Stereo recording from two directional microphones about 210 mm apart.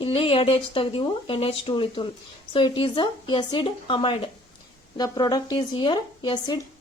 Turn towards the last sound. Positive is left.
turn(degrees=20)  # may be behind; listen again after turning